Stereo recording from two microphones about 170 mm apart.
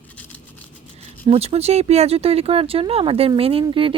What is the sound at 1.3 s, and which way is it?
Speech, 35° right (ahead or behind).